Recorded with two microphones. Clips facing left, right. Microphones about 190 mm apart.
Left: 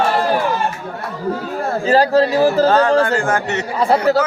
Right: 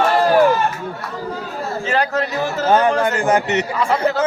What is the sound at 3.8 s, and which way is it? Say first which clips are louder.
Speech: left 6 dB; 35° left (ahead or behind).